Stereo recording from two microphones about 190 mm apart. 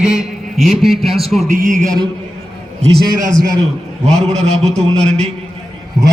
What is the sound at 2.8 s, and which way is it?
Speech, 55° right (ahead or behind).